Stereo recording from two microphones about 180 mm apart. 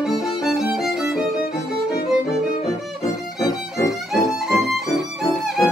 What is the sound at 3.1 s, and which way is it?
Music, 15° left (ahead or behind).